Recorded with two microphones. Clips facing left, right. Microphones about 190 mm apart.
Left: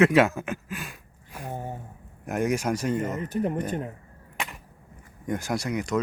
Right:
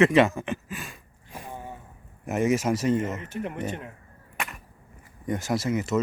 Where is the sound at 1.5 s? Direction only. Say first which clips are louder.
Left 5 dB; 45° left (ahead or behind).